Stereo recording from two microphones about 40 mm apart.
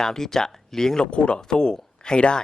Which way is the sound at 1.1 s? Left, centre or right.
Left.